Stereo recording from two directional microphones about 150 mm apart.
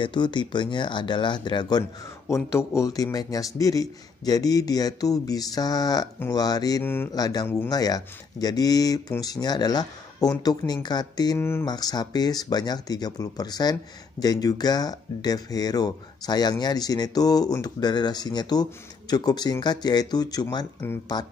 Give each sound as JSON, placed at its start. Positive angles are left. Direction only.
{"t": 0.0, "sound": "speech", "side_deg": 30}
{"t": 6.8, "sound": "speech", "side_deg": 15}
{"t": 7.2, "sound": "speech", "side_deg": 25}
{"t": 7.4, "sound": "speech", "side_deg": 15}
{"t": 7.7, "sound": "speech", "side_deg": 25}